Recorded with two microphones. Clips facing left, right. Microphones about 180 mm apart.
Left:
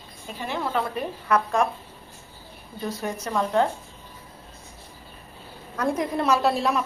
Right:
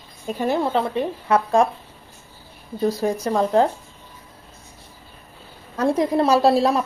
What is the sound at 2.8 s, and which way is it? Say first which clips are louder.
Speech: right 9 dB; 35° right (ahead or behind).